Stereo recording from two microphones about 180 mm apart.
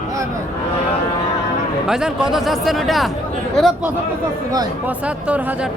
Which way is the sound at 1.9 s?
Centre (ahead or behind).